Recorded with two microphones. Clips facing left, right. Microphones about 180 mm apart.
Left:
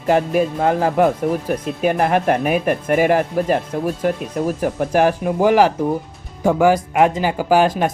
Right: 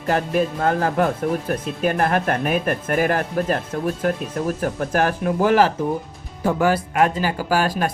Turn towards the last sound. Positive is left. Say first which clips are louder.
# left 5 dB
turn(degrees=20)  # may be behind; listen again after turning